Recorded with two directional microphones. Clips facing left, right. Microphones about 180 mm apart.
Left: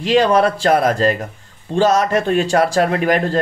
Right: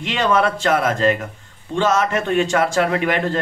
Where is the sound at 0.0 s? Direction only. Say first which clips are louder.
Left 5 dB; 35° left (ahead or behind).